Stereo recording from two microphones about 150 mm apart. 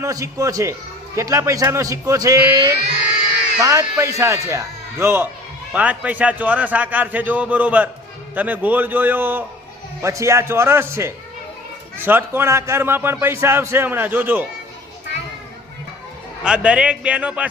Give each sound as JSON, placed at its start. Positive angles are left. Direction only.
{"t": 0.0, "sound": "a man's voice", "side_deg": -20}
{"t": 16.4, "sound": "a man's voice", "side_deg": -5}